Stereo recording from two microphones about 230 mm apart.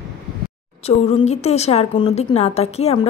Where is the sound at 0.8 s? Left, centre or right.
Left.